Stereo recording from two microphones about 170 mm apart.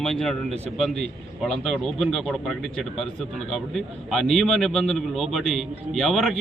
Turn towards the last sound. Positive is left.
turn(degrees=0)  # may be behind; listen again after turning